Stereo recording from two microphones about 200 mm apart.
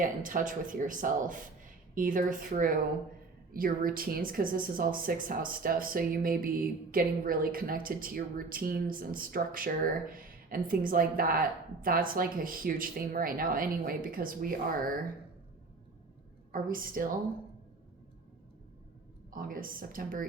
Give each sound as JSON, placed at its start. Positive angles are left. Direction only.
{"t": 0.0, "sound": "speech", "side_deg": -45}
{"t": 16.5, "sound": "speech", "side_deg": -45}
{"t": 19.3, "sound": "speech", "side_deg": -45}